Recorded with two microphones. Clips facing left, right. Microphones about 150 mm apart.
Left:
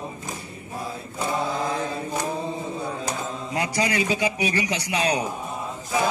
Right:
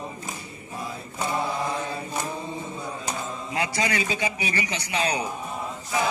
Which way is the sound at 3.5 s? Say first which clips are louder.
Left 2 dB; 40° left (ahead or behind).